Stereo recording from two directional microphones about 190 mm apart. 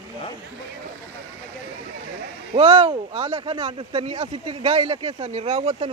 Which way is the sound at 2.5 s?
30° right (ahead or behind).